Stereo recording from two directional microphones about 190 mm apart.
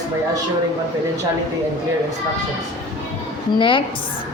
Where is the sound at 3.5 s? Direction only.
25° left (ahead or behind).